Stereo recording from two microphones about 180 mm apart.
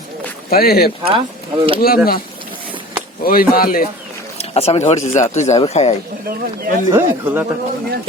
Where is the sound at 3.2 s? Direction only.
55° left (ahead or behind).